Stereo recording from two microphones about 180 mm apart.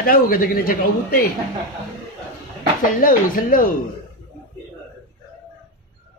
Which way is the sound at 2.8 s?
50° left (ahead or behind).